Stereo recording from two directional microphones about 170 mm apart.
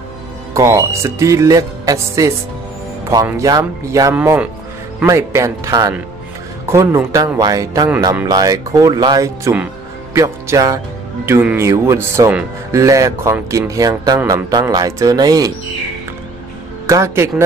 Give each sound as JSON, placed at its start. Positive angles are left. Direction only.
{"t": 0.6, "sound": "speech", "side_deg": -20}
{"t": 16.8, "sound": "a man's voice", "side_deg": -15}